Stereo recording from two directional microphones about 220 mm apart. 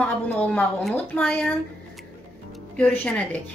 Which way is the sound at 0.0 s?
5° left (ahead or behind).